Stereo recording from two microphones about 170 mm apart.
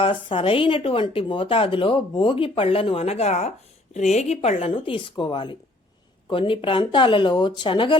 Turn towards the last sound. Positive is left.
turn(degrees=30)  # may be behind; listen again after turning